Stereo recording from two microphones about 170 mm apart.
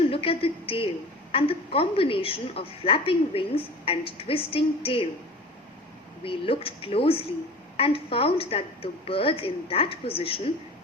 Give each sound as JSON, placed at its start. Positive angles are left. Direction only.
{"t": 0.0, "sound": "a woman's voice", "side_deg": 35}
{"t": 6.2, "sound": "a woman's voice", "side_deg": 30}